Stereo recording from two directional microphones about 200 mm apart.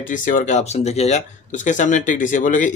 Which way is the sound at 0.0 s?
40° left (ahead or behind).